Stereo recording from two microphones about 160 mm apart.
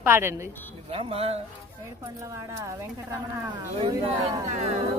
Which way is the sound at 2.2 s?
20° right (ahead or behind).